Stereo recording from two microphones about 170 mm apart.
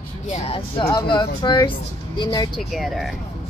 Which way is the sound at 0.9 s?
25° left (ahead or behind).